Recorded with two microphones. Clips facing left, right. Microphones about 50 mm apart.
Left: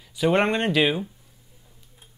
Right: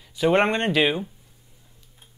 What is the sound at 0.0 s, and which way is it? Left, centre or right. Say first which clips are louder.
Speech: right 1 dB; centre.